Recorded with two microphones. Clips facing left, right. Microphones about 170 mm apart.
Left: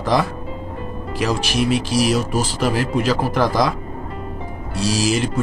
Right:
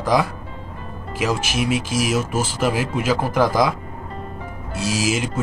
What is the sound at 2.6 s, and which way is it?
Speech, 15° right (ahead or behind).